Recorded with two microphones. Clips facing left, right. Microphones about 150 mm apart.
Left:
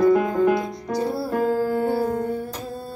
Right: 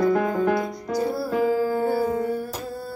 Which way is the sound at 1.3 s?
5° right (ahead or behind).